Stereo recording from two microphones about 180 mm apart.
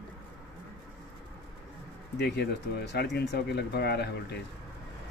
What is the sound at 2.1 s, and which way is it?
Speech, 65° left (ahead or behind).